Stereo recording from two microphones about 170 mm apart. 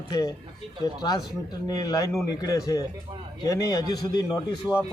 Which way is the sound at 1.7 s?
20° left (ahead or behind).